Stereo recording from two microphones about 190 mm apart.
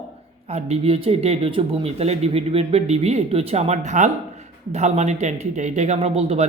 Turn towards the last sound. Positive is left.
turn(degrees=-30)  # may be behind; listen again after turning